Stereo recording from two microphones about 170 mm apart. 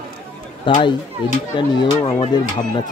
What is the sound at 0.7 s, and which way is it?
Speech, 30° left (ahead or behind).